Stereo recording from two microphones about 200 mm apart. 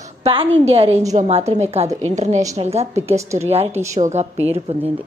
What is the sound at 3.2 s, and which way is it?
Speech, 15° right (ahead or behind).